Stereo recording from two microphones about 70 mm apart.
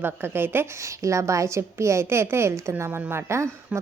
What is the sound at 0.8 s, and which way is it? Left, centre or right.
A woman's voice, right.